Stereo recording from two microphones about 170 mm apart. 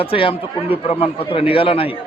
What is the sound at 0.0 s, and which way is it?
A man's voice, 30° left (ahead or behind).